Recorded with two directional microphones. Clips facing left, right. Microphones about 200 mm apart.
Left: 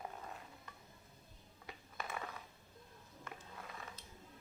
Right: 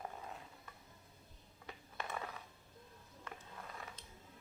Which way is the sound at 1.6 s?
10° left (ahead or behind).